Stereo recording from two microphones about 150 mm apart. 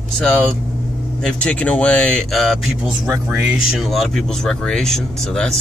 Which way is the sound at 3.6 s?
Centre (ahead or behind).